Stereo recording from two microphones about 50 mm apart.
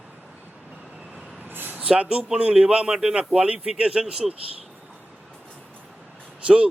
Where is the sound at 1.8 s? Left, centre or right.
Right.